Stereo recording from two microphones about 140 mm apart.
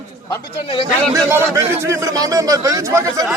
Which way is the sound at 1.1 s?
20° right (ahead or behind).